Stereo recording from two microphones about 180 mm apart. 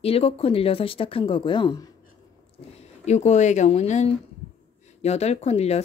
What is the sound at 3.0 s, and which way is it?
Speech, 40° left (ahead or behind).